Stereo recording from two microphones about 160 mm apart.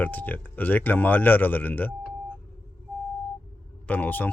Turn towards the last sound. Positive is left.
turn(degrees=10)  # may be behind; listen again after turning